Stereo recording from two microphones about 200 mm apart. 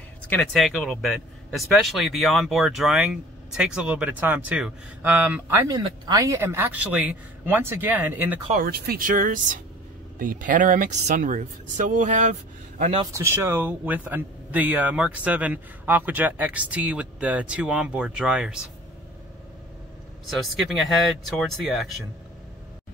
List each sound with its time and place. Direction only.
0.3 s speech: 5° left (ahead or behind)
8.5 s speech: 45° right (ahead or behind)
13.0 s speech: 15° right (ahead or behind)
20.2 s speech: centre (ahead or behind)